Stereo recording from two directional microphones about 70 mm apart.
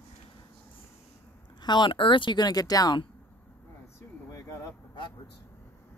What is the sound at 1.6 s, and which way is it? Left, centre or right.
Speech, left.